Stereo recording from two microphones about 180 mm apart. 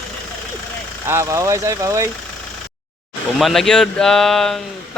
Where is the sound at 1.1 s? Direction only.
15° right (ahead or behind).